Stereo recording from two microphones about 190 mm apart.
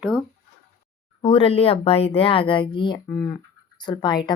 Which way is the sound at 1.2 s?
30° left (ahead or behind).